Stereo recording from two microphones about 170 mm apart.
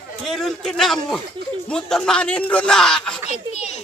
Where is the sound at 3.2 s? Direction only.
40° left (ahead or behind).